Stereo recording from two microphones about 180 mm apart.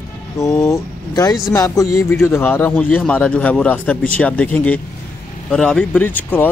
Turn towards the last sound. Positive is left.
turn(degrees=10)  # may be behind; listen again after turning